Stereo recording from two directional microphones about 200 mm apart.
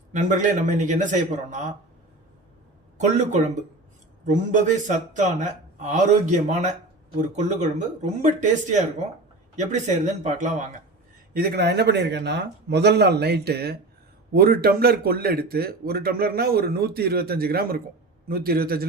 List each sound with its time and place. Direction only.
0.1 s a man's voice: 40° right (ahead or behind)
3.0 s a man's voice: 35° right (ahead or behind)
9.6 s a man's voice: 35° right (ahead or behind)
11.3 s a man's voice: 55° right (ahead or behind)